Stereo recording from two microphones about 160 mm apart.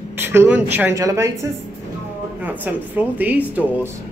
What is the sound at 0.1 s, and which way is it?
Speech, 15° right (ahead or behind).